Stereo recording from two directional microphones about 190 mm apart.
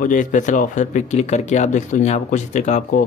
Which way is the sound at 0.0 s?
45° left (ahead or behind).